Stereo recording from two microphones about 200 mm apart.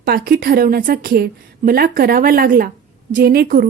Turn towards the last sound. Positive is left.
turn(degrees=-45)  # may be behind; listen again after turning